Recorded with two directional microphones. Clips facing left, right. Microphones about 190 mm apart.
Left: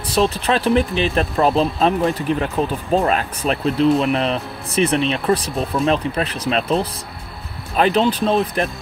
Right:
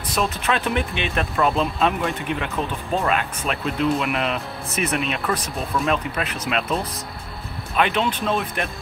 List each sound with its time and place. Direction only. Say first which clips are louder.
0.1 s speech: left 5 dB; 30° left (ahead or behind)